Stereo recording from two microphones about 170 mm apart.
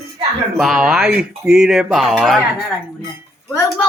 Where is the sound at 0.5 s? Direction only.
Centre (ahead or behind).